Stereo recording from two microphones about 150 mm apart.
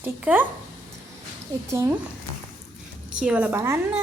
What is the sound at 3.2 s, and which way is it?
Speech, 10° right (ahead or behind).